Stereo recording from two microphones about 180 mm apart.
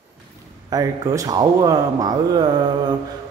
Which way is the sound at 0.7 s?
20° right (ahead or behind).